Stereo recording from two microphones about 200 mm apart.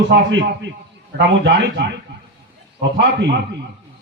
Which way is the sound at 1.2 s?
60° right (ahead or behind).